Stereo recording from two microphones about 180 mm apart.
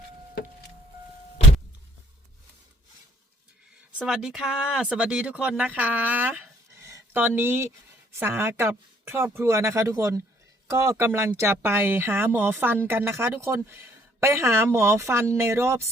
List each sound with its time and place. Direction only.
3.9 s speech: 5° right (ahead or behind)